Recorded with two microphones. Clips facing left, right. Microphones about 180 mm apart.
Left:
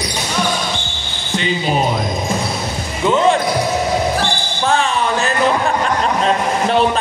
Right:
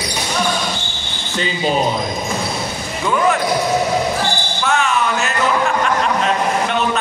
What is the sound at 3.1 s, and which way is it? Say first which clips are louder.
Speech: left 3 dB; 25° left (ahead or behind).